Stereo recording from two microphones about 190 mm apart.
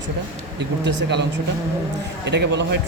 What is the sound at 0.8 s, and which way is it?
Speech, 65° right (ahead or behind).